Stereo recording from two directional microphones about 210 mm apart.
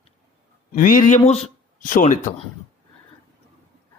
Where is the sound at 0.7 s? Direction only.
40° left (ahead or behind).